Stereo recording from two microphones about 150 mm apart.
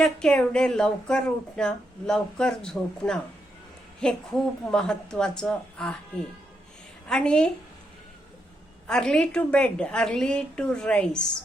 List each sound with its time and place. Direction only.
0.0 s speech: 5° left (ahead or behind)
7.1 s speech: 5° left (ahead or behind)
8.9 s a woman's voice: 5° left (ahead or behind)